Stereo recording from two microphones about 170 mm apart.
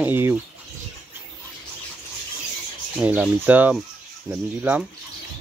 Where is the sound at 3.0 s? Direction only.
10° right (ahead or behind).